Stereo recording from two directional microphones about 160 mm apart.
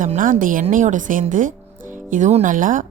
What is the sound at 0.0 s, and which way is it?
Speech, 55° right (ahead or behind).